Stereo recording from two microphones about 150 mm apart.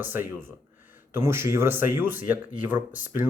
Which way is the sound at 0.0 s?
15° right (ahead or behind).